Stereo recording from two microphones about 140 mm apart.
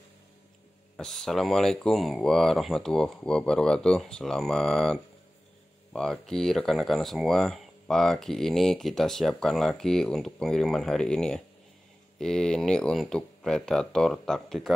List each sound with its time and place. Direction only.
0.9 s speech: 5° left (ahead or behind)
5.9 s speech: 5° left (ahead or behind)